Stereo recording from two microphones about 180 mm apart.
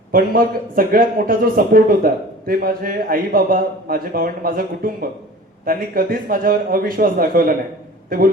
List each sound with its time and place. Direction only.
0.1 s speech: 50° right (ahead or behind)